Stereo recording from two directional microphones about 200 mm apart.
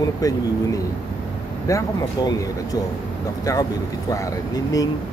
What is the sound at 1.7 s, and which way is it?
Speech, 15° left (ahead or behind).